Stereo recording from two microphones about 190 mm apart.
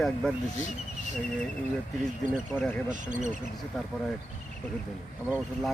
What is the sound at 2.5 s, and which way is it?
Speech, 10° left (ahead or behind).